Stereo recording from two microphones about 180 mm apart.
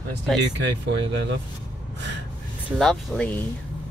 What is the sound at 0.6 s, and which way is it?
Speech, 70° right (ahead or behind).